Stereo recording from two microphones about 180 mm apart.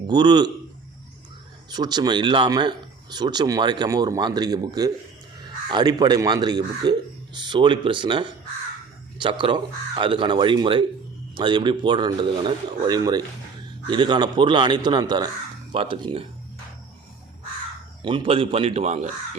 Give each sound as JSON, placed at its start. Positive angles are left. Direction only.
{"t": 0.1, "sound": "speech", "side_deg": -25}
{"t": 1.7, "sound": "speech", "side_deg": -25}
{"t": 18.0, "sound": "a man's voice", "side_deg": -30}